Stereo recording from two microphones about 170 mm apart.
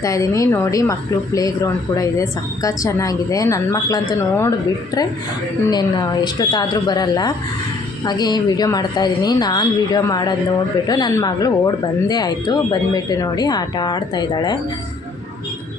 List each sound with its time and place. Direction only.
0.0 s a woman's voice: 20° left (ahead or behind)
5.7 s a woman's voice: 25° left (ahead or behind)